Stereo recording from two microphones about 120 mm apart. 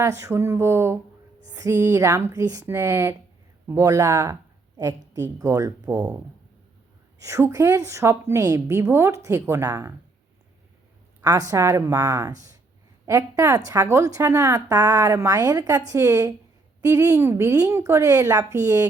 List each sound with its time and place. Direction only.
0.0 s a woman's voice: 25° right (ahead or behind)
7.2 s a woman's voice: 25° right (ahead or behind)
11.2 s a woman's voice: 30° right (ahead or behind)